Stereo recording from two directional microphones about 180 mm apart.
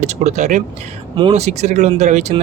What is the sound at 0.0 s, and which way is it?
Speech, 40° right (ahead or behind).